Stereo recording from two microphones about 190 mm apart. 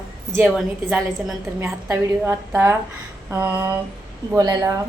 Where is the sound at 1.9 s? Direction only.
15° right (ahead or behind).